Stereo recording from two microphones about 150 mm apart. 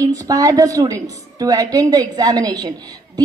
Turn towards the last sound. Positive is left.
turn(degrees=-25)  # may be behind; listen again after turning